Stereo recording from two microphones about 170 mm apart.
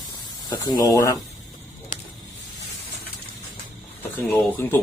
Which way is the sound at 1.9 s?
50° left (ahead or behind).